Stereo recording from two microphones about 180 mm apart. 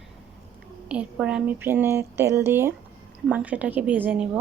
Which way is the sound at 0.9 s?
5° right (ahead or behind).